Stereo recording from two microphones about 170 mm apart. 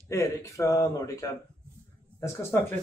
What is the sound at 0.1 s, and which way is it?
Speech, 15° left (ahead or behind).